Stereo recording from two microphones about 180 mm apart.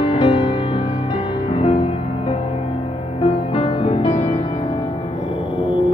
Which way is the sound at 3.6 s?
30° left (ahead or behind).